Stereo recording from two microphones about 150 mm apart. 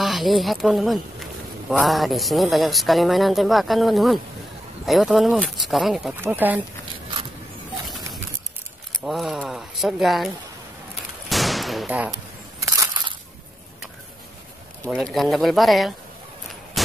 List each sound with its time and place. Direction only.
0.0 s speech: centre (ahead or behind)
6.1 s speech: 15° right (ahead or behind)
9.0 s speech: centre (ahead or behind)
11.2 s a sound: centre (ahead or behind)
12.6 s crushing: 20° right (ahead or behind)
15.0 s speech: centre (ahead or behind)
16.8 s a sound: centre (ahead or behind)